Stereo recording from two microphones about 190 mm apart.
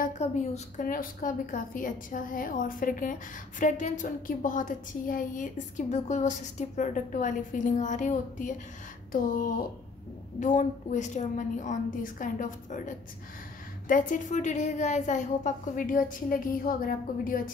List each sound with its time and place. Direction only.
0.0 s a woman's voice: 40° left (ahead or behind)
10.4 s a woman's voice: 40° left (ahead or behind)